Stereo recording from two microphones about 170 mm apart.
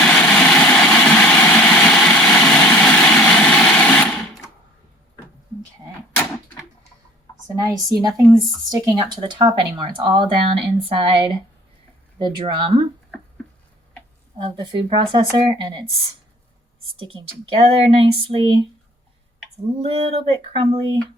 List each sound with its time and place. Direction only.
0.0 s vehicle: 5° left (ahead or behind)
7.6 s speech: 20° right (ahead or behind)
12.4 s speech: 25° right (ahead or behind)
14.3 s speech: 30° right (ahead or behind)
17.0 s a woman's voice: 30° right (ahead or behind)
19.8 s a woman's voice: 30° right (ahead or behind)